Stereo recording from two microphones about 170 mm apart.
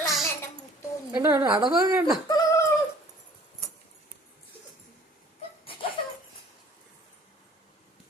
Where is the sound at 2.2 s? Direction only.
20° left (ahead or behind).